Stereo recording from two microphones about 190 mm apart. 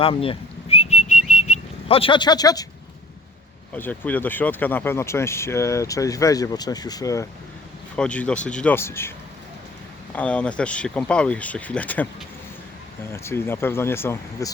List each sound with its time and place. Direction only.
0.0 s whistling: 30° left (ahead or behind)
3.8 s speech: 10° left (ahead or behind)
7.9 s speech: 5° left (ahead or behind)
13.1 s speech: 15° left (ahead or behind)